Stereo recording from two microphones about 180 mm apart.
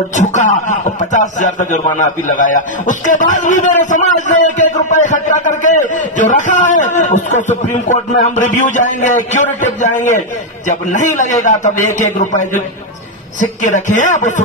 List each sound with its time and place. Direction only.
0.1 s a man's voice: 45° left (ahead or behind)